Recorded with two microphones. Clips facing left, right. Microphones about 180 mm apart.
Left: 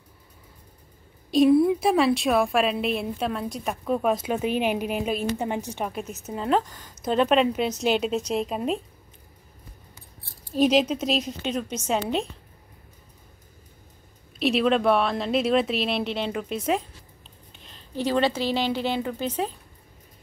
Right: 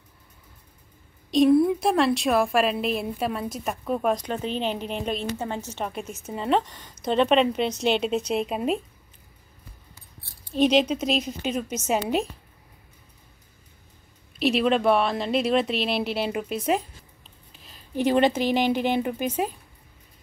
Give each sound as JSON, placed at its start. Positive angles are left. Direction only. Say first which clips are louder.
{"t": 1.3, "sound": "a woman's voice", "louder": "even", "side_deg": 0}
{"t": 6.2, "sound": "a woman's voice", "louder": "even", "side_deg": 0}
{"t": 10.5, "sound": "a woman's voice", "louder": "even", "side_deg": 5}
{"t": 14.4, "sound": "a woman's voice", "louder": "even", "side_deg": 0}
{"t": 17.5, "sound": "a sound", "louder": "left 1 dB", "side_deg": -5}
{"t": 17.9, "sound": "a woman's voice", "louder": "right 3 dB", "side_deg": -20}